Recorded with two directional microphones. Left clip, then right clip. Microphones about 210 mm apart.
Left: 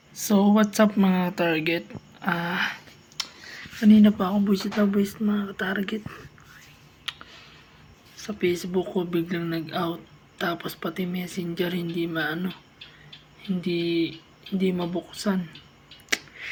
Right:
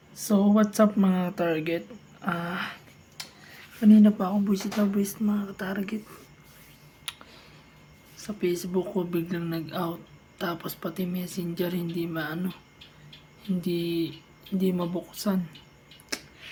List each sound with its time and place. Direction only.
0.1 s speech: 5° right (ahead or behind)
2.2 s a sound: centre (ahead or behind)
3.8 s speech: 5° right (ahead or behind)
7.1 s clicking: 15° right (ahead or behind)
8.1 s speech: 5° right (ahead or behind)
13.6 s speech: 15° right (ahead or behind)